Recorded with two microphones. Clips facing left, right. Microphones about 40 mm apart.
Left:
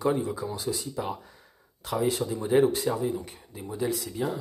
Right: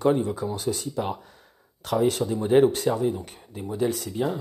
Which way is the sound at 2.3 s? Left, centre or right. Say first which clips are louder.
Right 3 dB; right.